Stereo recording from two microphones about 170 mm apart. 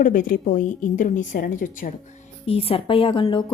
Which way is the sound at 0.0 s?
50° left (ahead or behind).